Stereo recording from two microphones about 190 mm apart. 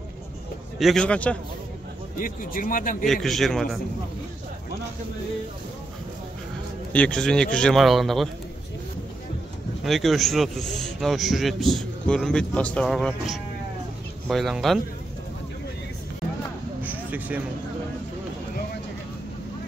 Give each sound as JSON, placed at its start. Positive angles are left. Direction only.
{"t": 0.7, "sound": "a man's voice", "side_deg": 0}
{"t": 2.1, "sound": "speech", "side_deg": 45}
{"t": 3.1, "sound": "a man's voice", "side_deg": 0}
{"t": 6.9, "sound": "a man's voice", "side_deg": 5}
{"t": 9.8, "sound": "a man's voice", "side_deg": 0}
{"t": 16.8, "sound": "a sound", "side_deg": -10}